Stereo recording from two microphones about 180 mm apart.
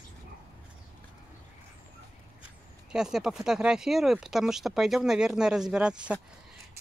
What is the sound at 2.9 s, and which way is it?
Speech, 5° right (ahead or behind).